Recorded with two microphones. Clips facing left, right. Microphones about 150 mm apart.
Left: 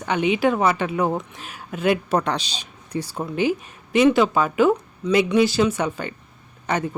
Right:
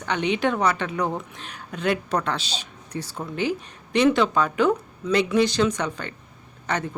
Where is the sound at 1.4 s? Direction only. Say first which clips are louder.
Left 3 dB; 5° left (ahead or behind).